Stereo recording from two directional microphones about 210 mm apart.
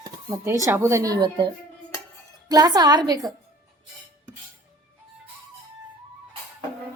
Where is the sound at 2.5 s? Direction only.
20° right (ahead or behind).